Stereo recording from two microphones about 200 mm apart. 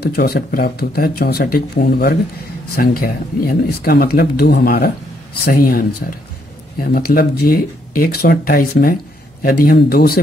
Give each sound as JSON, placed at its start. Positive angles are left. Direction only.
{"t": 0.0, "sound": "speech", "side_deg": 50}